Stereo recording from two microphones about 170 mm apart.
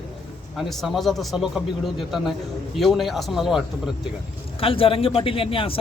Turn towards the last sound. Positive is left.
turn(degrees=30)  # may be behind; listen again after turning